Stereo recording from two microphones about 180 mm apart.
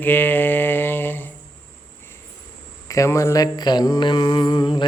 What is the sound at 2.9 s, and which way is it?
Mantra, 15° left (ahead or behind).